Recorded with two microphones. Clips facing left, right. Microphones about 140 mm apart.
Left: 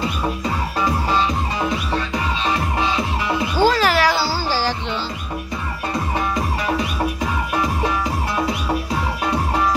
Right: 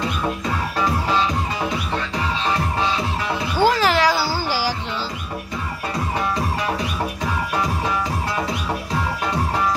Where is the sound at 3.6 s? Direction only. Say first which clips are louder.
Even; 20° right (ahead or behind).